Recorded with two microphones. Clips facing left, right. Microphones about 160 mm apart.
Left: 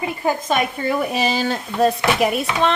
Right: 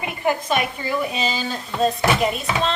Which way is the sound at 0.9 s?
55° left (ahead or behind).